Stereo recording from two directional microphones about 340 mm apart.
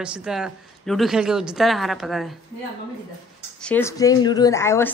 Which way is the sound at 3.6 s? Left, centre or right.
Centre.